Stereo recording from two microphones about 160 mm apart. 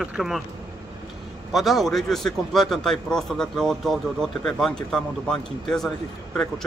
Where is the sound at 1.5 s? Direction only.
Centre (ahead or behind).